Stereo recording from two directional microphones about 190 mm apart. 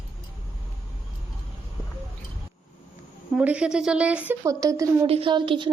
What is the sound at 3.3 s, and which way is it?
Speech, 5° right (ahead or behind).